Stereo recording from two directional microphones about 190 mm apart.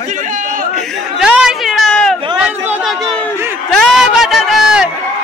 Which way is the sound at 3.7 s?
Centre (ahead or behind).